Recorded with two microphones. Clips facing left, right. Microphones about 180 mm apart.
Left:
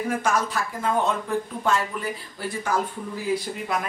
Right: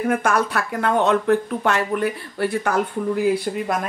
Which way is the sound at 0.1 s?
60° right (ahead or behind).